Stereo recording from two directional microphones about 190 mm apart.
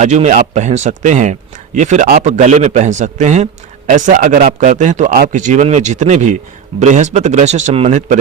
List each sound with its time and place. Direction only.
0.0 s speech: 40° right (ahead or behind)